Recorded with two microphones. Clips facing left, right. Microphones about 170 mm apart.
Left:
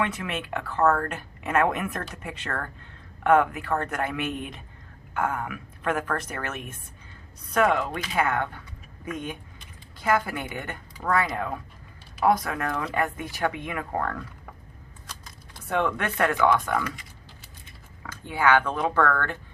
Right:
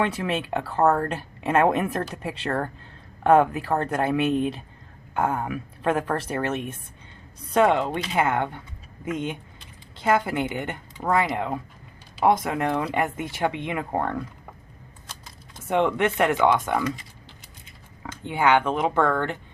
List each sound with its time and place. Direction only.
0.0 s speech: 30° right (ahead or behind)
15.5 s speech: 20° right (ahead or behind)